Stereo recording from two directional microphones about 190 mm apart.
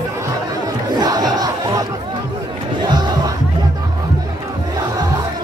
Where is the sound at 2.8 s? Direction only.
20° right (ahead or behind).